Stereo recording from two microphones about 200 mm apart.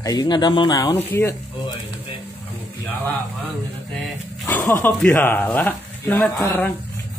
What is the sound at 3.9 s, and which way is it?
Dog, centre (ahead or behind).